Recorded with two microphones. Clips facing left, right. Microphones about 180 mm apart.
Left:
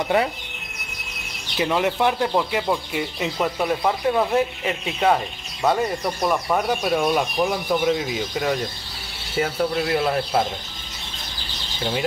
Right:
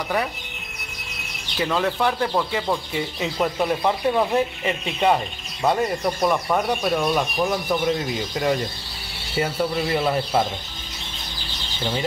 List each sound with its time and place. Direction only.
1.6 s speech: 20° left (ahead or behind); by 10.4 s centre (ahead or behind)